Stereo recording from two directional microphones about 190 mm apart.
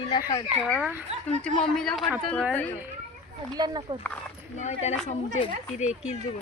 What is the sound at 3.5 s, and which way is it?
Speech, 20° right (ahead or behind).